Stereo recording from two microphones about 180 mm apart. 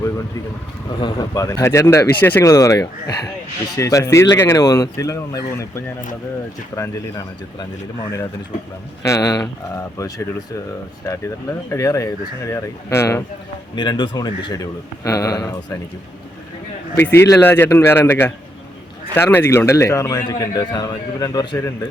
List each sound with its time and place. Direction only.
0.9 s a man's voice: 25° left (ahead or behind)
9.0 s a man's voice: 20° left (ahead or behind)
11.7 s a man's voice: 15° left (ahead or behind)
13.7 s a man's voice: 25° left (ahead or behind)
16.9 s a man's voice: 15° left (ahead or behind)